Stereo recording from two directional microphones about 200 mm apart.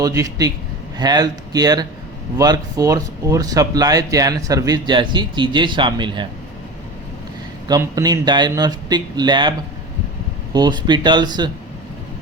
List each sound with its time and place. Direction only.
0.0 s speech: 15° right (ahead or behind)
7.7 s speech: 20° right (ahead or behind)